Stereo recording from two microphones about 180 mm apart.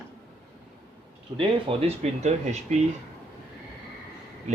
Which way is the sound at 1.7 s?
30° right (ahead or behind).